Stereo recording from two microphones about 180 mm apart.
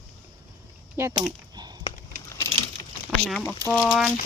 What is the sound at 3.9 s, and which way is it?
Speech, 5° right (ahead or behind).